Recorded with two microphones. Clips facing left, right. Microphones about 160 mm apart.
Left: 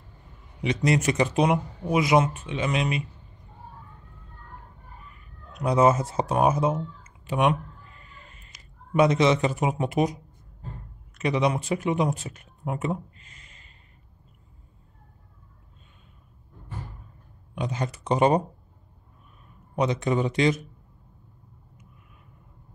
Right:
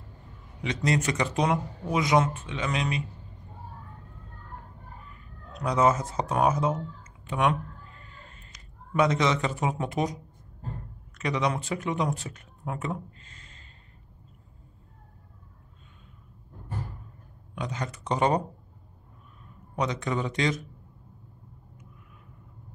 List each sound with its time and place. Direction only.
0.6 s speech: 20° left (ahead or behind)
5.6 s speech: 20° left (ahead or behind)
8.9 s speech: 20° left (ahead or behind)
11.1 s speech: 20° left (ahead or behind)
17.6 s speech: 20° left (ahead or behind)
19.7 s speech: 20° left (ahead or behind)